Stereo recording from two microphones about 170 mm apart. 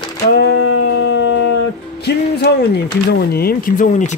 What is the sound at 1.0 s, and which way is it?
Howl, 90° left.